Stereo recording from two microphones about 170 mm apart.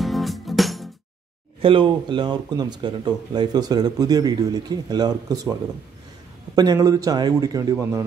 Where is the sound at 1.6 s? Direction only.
30° right (ahead or behind).